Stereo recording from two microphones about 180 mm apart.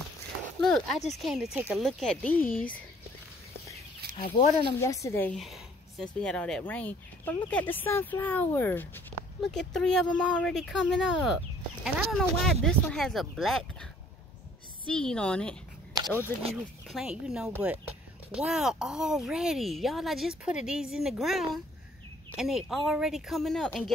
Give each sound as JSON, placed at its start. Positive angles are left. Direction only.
{"t": 0.6, "sound": "a sound", "side_deg": 0}
{"t": 1.1, "sound": "speech", "side_deg": 0}
{"t": 2.4, "sound": "speech", "side_deg": 50}
{"t": 4.4, "sound": "speech", "side_deg": 25}
{"t": 4.8, "sound": "speech", "side_deg": 15}
{"t": 5.3, "sound": "speech", "side_deg": 0}
{"t": 14.9, "sound": "speech", "side_deg": 5}
{"t": 16.8, "sound": "speech", "side_deg": -5}